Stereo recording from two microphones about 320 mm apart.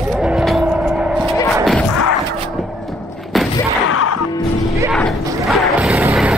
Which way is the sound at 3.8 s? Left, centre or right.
Left.